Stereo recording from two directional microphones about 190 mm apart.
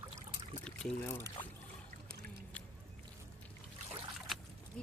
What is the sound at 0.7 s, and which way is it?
Speech, 10° left (ahead or behind).